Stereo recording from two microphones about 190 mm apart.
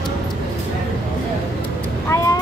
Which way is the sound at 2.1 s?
20° left (ahead or behind).